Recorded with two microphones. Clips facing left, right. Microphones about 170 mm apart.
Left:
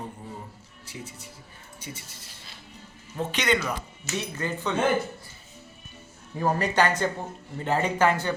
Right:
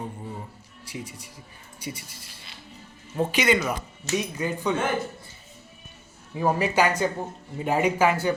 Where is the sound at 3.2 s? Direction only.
10° right (ahead or behind).